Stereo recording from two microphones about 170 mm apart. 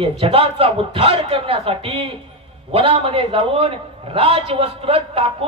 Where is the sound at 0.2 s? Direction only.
35° right (ahead or behind).